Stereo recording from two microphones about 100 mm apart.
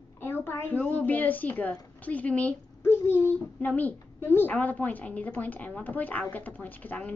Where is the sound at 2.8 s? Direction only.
25° left (ahead or behind).